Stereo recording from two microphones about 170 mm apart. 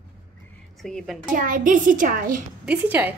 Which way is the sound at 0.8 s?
Centre (ahead or behind).